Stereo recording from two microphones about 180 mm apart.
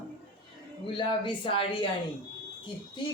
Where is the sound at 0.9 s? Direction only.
30° left (ahead or behind).